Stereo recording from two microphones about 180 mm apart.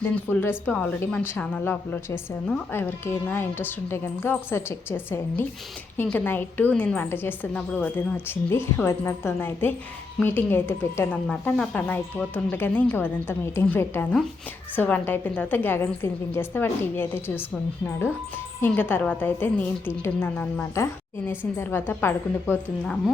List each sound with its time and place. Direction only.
0.0 s a woman's voice: 10° left (ahead or behind)